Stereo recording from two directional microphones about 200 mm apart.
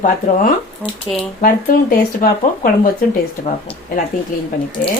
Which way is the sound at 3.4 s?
35° left (ahead or behind).